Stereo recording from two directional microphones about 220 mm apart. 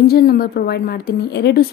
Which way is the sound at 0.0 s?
45° left (ahead or behind).